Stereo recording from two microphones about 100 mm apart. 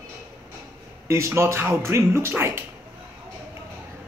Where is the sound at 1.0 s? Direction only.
30° right (ahead or behind).